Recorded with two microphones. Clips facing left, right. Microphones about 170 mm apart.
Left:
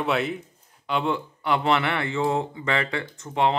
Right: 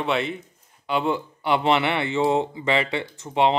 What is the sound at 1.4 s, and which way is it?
Speech, 25° right (ahead or behind).